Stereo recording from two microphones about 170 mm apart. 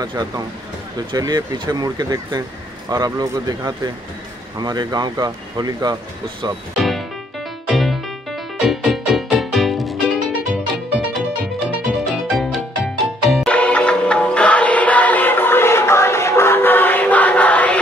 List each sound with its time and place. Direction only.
0.0 s speech: 20° right (ahead or behind)
6.8 s music: centre (ahead or behind)